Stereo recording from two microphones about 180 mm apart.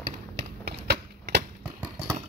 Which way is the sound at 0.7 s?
65° right (ahead or behind).